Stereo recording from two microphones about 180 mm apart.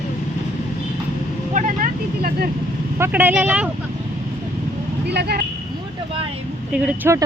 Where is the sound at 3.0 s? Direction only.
10° right (ahead or behind).